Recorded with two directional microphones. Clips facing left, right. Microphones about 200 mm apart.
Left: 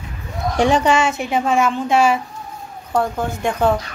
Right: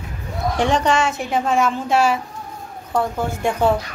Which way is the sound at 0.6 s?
10° left (ahead or behind).